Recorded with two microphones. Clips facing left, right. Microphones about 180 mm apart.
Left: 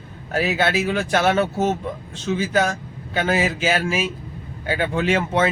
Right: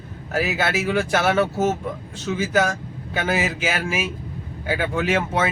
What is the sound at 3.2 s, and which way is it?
Speech, 10° right (ahead or behind).